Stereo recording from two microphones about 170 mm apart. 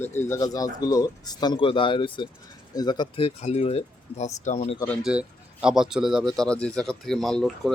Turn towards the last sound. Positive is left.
turn(degrees=0)  # may be behind; listen again after turning